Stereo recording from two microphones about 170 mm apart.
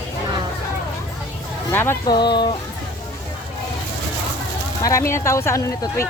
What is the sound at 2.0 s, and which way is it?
Speech, 25° left (ahead or behind).